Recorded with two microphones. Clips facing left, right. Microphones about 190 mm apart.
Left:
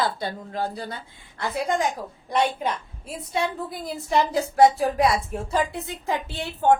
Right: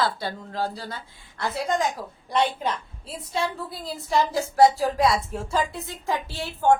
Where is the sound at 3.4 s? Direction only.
15° left (ahead or behind).